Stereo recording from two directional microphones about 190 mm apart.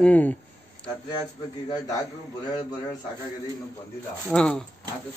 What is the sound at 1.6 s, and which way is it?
Speech, 15° left (ahead or behind).